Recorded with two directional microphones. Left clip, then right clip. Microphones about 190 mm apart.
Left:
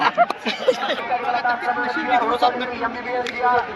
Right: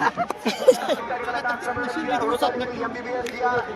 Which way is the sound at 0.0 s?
35° left (ahead or behind).